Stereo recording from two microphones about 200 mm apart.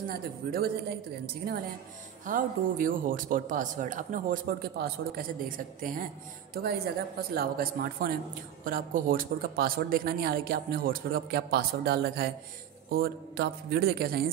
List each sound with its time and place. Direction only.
0.1 s a man's voice: 50° right (ahead or behind)
2.2 s a man's voice: 45° right (ahead or behind)
7.2 s a man's voice: 50° right (ahead or behind)